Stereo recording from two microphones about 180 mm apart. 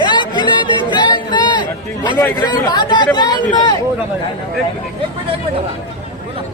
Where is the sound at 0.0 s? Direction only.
25° left (ahead or behind).